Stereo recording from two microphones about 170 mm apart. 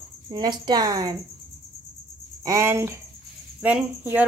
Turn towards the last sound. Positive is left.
turn(degrees=-10)  # may be behind; listen again after turning